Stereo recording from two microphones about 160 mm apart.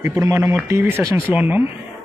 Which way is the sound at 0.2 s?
15° right (ahead or behind).